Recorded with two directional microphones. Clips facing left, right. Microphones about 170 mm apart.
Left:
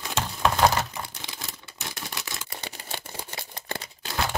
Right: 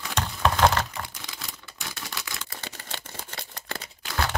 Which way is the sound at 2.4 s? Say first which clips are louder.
Left 1 dB; 15° left (ahead or behind).